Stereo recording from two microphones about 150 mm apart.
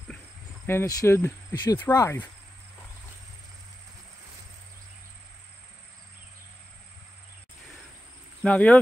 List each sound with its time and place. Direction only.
0.7 s cricket: 15° left (ahead or behind)
1.5 s speech: 25° left (ahead or behind)
1.8 s cricket: 15° left (ahead or behind)
8.5 s cricket: 10° left (ahead or behind)